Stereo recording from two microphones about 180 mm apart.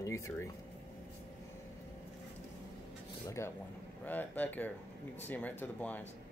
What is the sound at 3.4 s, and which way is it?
Speech, 15° left (ahead or behind).